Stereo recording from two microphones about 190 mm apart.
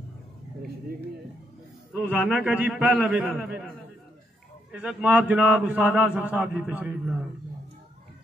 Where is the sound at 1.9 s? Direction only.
5° right (ahead or behind).